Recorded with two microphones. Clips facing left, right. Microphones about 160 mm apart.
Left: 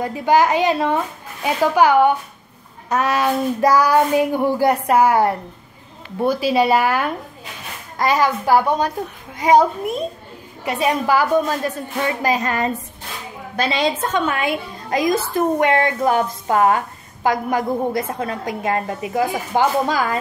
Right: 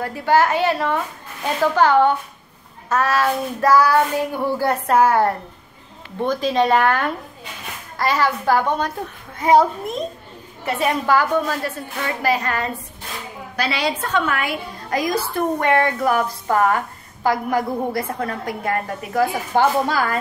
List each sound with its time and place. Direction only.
0.0 s child singing: 15° left (ahead or behind)
12.2 s a woman's voice: 20° left (ahead or behind)